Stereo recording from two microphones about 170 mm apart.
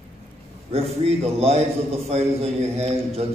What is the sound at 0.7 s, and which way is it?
A man's voice, 35° right (ahead or behind).